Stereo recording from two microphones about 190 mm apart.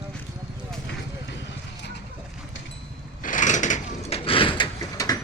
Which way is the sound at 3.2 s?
45° left (ahead or behind).